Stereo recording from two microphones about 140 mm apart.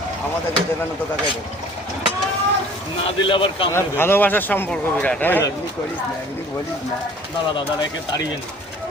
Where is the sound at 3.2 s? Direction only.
35° left (ahead or behind).